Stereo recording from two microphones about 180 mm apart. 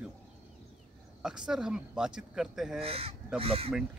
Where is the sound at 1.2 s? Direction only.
5° right (ahead or behind).